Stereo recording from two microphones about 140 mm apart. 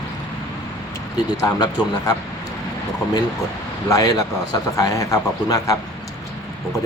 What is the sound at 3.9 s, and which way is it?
Speech, 25° left (ahead or behind).